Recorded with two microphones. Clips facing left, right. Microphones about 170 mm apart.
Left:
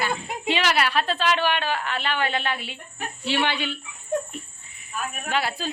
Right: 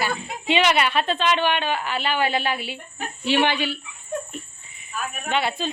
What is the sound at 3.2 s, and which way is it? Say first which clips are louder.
Speech: right 4 dB; 15° right (ahead or behind).